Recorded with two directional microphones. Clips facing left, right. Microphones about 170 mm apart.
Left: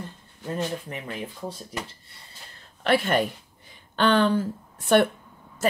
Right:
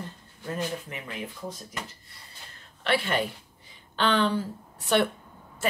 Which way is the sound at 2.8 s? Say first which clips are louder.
Left 4 dB; 45° left (ahead or behind).